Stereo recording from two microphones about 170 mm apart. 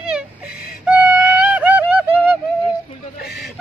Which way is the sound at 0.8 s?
10° right (ahead or behind).